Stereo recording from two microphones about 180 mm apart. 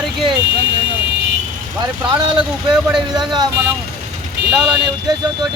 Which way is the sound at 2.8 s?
5° right (ahead or behind).